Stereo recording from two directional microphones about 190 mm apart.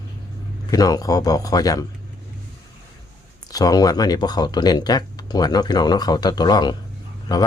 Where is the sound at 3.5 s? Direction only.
20° left (ahead or behind).